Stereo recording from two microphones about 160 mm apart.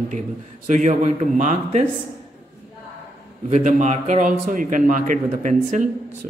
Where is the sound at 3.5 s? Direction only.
50° right (ahead or behind).